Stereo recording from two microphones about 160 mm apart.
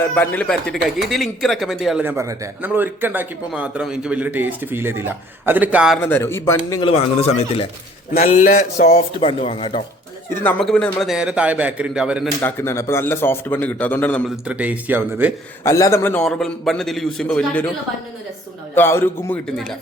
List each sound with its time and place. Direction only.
0.2 s a man's voice: 10° left (ahead or behind)
2.0 s a man's voice: 20° right (ahead or behind)
6.0 s a man's voice: 10° left (ahead or behind)
6.8 s a man's voice: 40° left (ahead or behind)
9.2 s speech: 35° left (ahead or behind)
10.3 s a man's voice: 5° left (ahead or behind)
12.4 s a man's voice: 15° left (ahead or behind)
14.3 s a man's voice: 10° right (ahead or behind)
15.6 s a man's voice: 20° left (ahead or behind)
18.7 s a man's voice: 15° left (ahead or behind)